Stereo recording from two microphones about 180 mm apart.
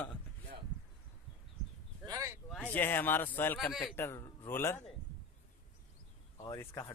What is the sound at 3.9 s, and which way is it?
Speech, 15° left (ahead or behind).